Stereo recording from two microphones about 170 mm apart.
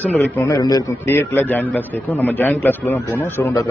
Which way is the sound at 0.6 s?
20° left (ahead or behind).